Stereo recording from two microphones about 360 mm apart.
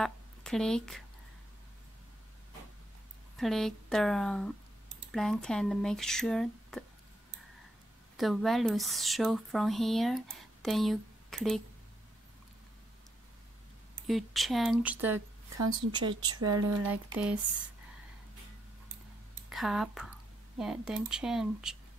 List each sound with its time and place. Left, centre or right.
0.0 s speech: centre
3.3 s speech: centre
8.2 s speech: centre
14.0 s speech: centre
16.3 s speech: right
16.8 s speech: centre
19.5 s speech: centre